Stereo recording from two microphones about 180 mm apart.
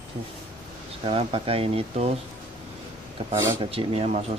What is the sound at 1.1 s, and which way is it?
Speech, 35° right (ahead or behind).